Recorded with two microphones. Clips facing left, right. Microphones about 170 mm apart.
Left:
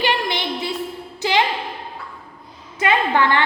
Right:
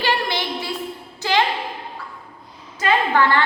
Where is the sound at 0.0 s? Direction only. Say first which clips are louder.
Left 1 dB; 20° left (ahead or behind).